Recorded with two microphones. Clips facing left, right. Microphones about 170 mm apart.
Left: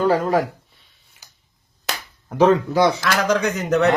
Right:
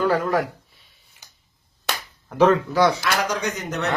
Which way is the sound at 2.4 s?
20° left (ahead or behind).